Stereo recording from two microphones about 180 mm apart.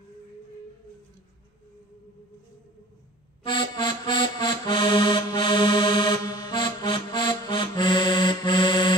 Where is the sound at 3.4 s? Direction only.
25° left (ahead or behind).